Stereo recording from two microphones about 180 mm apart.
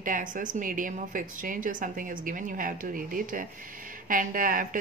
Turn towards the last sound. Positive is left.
turn(degrees=-50)  # may be behind; listen again after turning